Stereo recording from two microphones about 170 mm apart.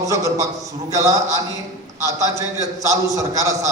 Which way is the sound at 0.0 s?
20° right (ahead or behind).